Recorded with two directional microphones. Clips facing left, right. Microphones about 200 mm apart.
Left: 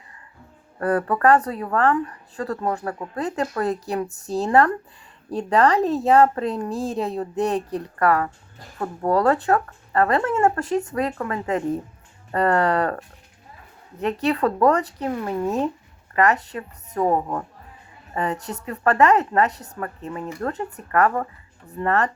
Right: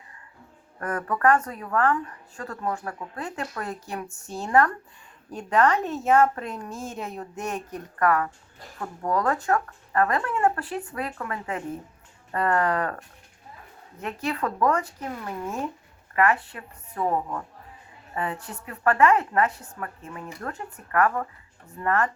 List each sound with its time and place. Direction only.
0.8 s speech: 35° left (ahead or behind)
14.0 s speech: 35° left (ahead or behind)
16.1 s speech: 40° left (ahead or behind)
18.1 s speech: 40° left (ahead or behind)